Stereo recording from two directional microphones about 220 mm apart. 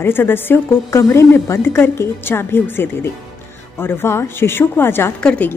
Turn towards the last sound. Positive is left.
turn(degrees=5)  # may be behind; listen again after turning